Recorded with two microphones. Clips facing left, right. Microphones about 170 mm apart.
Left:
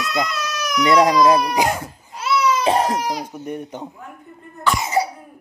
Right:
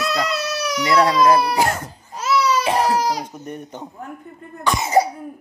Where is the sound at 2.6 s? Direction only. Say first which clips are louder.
Left 1 dB; 35° left (ahead or behind).